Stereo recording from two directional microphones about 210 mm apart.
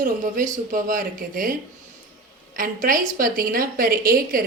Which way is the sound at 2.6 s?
40° right (ahead or behind).